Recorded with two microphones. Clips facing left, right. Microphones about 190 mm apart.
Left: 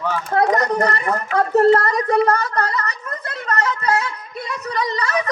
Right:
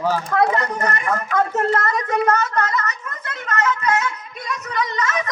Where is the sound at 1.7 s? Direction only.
35° left (ahead or behind).